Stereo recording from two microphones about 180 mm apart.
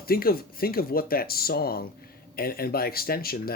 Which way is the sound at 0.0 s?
55° left (ahead or behind).